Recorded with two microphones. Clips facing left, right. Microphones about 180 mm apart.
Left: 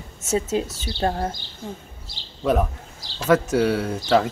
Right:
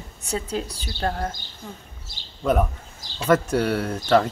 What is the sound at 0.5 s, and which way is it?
Speech, 20° left (ahead or behind).